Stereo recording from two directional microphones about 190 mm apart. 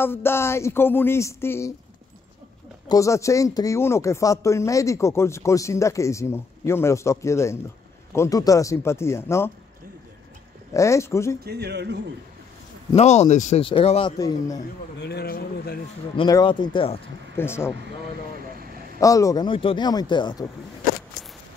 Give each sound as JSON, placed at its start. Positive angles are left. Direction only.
{"t": 0.0, "sound": "speech", "side_deg": 10}
{"t": 2.9, "sound": "speech", "side_deg": 15}
{"t": 10.7, "sound": "speech", "side_deg": 15}
{"t": 11.4, "sound": "speech", "side_deg": -60}
{"t": 12.9, "sound": "speech", "side_deg": 35}
{"t": 14.1, "sound": "speech", "side_deg": 20}
{"t": 15.0, "sound": "speech", "side_deg": 60}
{"t": 16.2, "sound": "speech", "side_deg": 25}
{"t": 17.4, "sound": "speech", "side_deg": 10}
{"t": 18.9, "sound": "speech", "side_deg": 15}